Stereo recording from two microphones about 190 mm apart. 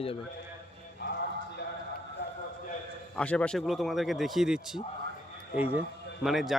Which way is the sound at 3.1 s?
5° left (ahead or behind).